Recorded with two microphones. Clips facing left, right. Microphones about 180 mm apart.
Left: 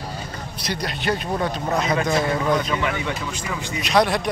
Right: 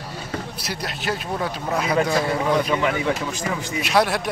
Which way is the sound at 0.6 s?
5° right (ahead or behind).